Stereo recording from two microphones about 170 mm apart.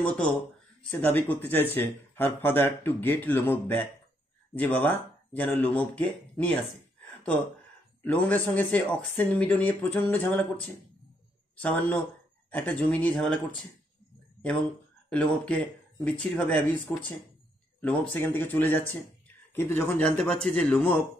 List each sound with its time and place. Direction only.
0.9 s speech: 10° left (ahead or behind)
8.0 s speech: 10° left (ahead or behind)
15.0 s speech: 5° left (ahead or behind)